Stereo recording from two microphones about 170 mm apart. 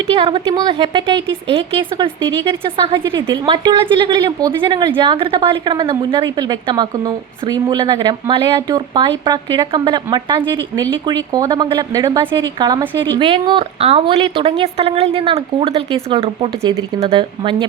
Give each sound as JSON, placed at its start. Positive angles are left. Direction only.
{"t": 0.1, "sound": "a woman's voice", "side_deg": -30}